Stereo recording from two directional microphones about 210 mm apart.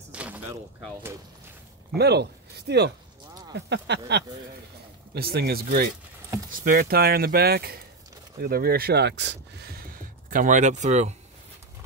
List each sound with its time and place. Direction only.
0.1 s speech: 5° right (ahead or behind)
2.0 s speech: 50° right (ahead or behind); by 11.1 s 35° right (ahead or behind)